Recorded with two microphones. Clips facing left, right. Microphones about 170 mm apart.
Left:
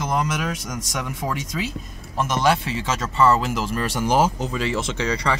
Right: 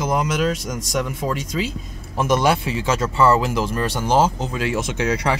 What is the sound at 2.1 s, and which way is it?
Speech, 5° right (ahead or behind).